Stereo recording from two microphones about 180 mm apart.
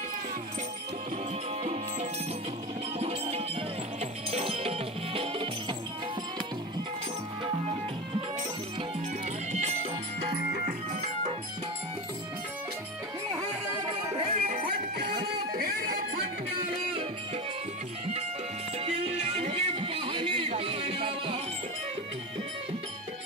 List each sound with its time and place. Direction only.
1.6 s music: 40° right (ahead or behind)
14.1 s music: 35° right (ahead or behind)
15.5 s a sound: 55° right (ahead or behind)
18.9 s music: 35° right (ahead or behind)